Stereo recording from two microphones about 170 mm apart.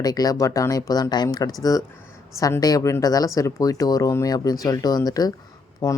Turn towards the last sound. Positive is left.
turn(degrees=20)  # may be behind; listen again after turning